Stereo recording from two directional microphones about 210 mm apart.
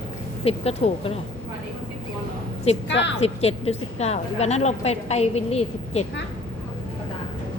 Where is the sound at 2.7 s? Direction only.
30° left (ahead or behind).